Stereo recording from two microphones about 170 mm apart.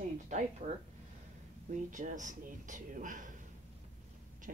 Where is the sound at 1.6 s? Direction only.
50° right (ahead or behind).